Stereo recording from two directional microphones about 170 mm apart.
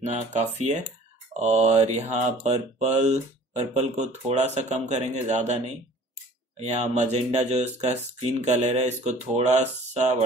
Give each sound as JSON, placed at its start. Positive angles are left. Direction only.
{"t": 0.0, "sound": "speech", "side_deg": -45}